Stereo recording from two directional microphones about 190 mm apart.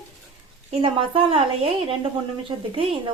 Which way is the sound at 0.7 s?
25° right (ahead or behind).